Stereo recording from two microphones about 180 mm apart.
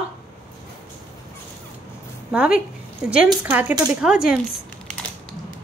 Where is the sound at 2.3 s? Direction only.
5° right (ahead or behind).